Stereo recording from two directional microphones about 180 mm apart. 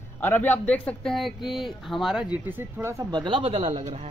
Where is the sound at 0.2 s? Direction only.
10° left (ahead or behind).